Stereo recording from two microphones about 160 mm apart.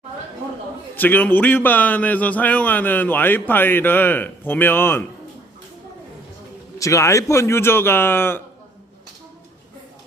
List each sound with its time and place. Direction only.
0.9 s a man's voice: 10° left (ahead or behind)
6.7 s a man's voice: 20° left (ahead or behind)